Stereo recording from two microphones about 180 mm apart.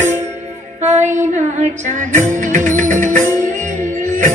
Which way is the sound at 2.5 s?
45° right (ahead or behind).